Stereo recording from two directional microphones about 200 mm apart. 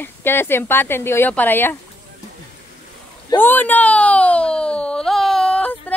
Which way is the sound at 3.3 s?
10° left (ahead or behind).